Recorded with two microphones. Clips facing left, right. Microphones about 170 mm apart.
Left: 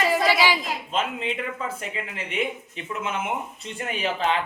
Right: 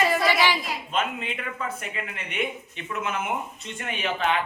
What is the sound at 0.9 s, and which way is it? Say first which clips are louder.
Speech: left 1 dB; 30° left (ahead or behind).